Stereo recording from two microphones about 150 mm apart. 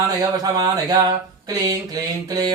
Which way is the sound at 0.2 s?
25° right (ahead or behind).